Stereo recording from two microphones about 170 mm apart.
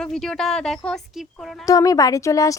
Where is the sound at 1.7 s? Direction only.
20° left (ahead or behind).